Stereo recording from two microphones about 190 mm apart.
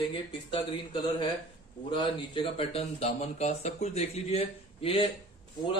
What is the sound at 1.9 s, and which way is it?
Speech, 25° left (ahead or behind).